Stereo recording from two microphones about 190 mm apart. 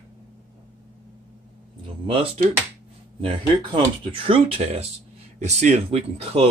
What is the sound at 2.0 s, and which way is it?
Speech, 30° right (ahead or behind).